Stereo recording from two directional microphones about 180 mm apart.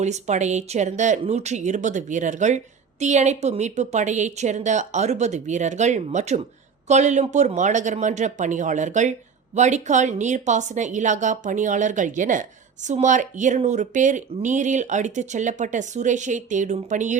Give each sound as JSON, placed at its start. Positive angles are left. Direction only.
{"t": 0.0, "sound": "speech", "side_deg": -40}